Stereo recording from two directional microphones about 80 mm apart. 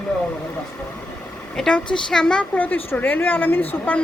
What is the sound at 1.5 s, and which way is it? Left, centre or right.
Speech, centre.